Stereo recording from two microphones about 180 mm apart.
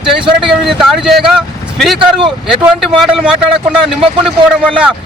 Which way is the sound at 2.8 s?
Centre (ahead or behind).